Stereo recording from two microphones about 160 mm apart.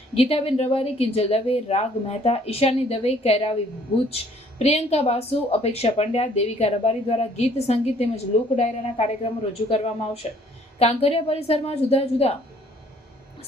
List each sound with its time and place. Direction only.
0.1 s speech: 40° left (ahead or behind)